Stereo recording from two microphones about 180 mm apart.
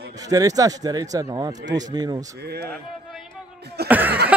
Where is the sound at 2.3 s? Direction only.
65° right (ahead or behind).